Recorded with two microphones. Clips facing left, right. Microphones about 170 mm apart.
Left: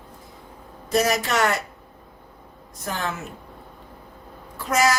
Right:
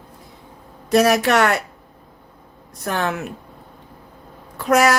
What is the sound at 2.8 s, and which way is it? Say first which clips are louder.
Speech: right 6 dB; 65° right (ahead or behind).